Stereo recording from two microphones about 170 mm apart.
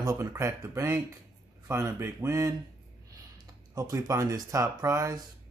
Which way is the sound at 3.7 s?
20° right (ahead or behind).